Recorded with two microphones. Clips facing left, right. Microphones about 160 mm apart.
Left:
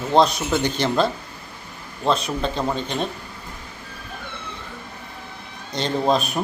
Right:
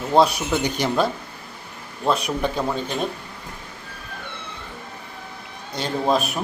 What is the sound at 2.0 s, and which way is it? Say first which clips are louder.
Speech: even; 10° right (ahead or behind).